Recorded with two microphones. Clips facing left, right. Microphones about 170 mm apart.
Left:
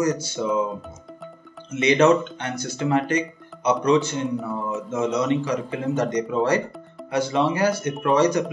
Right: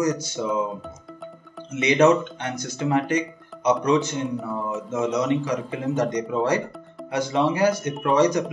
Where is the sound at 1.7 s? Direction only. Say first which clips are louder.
Left 1 dB; 15° right (ahead or behind).